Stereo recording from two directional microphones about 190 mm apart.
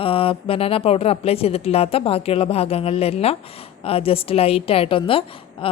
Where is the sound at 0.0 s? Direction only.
30° left (ahead or behind).